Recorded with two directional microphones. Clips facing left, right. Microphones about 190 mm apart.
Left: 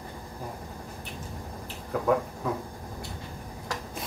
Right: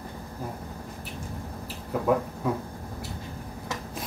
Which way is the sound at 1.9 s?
5° right (ahead or behind).